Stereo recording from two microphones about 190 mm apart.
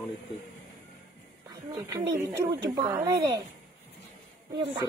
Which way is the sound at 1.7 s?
15° right (ahead or behind).